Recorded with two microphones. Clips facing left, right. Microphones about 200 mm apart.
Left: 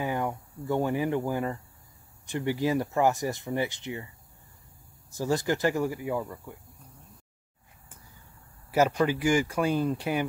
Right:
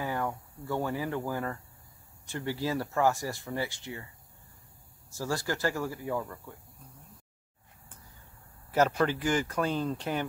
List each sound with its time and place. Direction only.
0.0 s speech: 20° left (ahead or behind)
5.1 s speech: 20° left (ahead or behind)
8.7 s speech: 10° left (ahead or behind)